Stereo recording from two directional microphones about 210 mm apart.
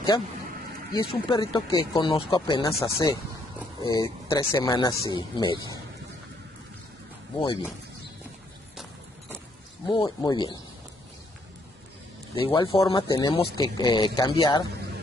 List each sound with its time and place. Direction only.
0.9 s speech: 20° left (ahead or behind)
9.8 s speech: 20° left (ahead or behind)
12.4 s speech: 25° left (ahead or behind)